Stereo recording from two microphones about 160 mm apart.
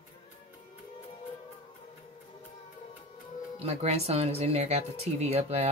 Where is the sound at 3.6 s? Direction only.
40° right (ahead or behind).